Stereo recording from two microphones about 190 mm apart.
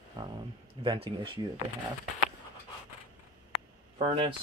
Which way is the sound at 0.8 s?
25° right (ahead or behind).